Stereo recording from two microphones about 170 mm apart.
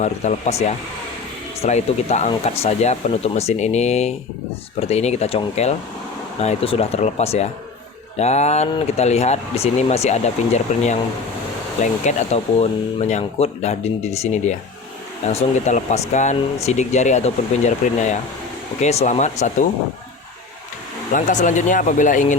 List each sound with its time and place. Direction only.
0.0 s speech: 45° left (ahead or behind)
21.1 s speech: 50° left (ahead or behind)